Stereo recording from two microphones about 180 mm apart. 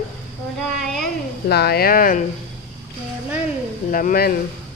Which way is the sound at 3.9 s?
50° left (ahead or behind).